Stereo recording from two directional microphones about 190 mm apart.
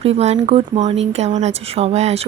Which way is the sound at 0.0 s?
35° right (ahead or behind).